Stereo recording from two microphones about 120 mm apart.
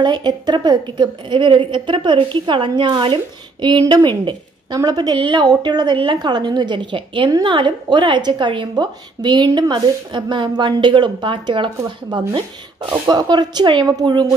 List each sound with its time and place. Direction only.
0.0 s a woman's voice: 35° right (ahead or behind)